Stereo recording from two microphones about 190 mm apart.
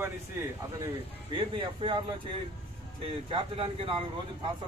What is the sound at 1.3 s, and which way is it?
Speech, 25° right (ahead or behind).